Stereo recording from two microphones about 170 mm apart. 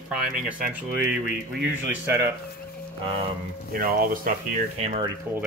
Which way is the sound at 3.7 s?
55° right (ahead or behind).